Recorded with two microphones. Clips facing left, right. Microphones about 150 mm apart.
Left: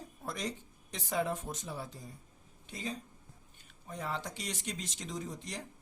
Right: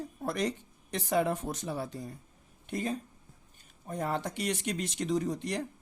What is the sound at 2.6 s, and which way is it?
Speech, 55° right (ahead or behind).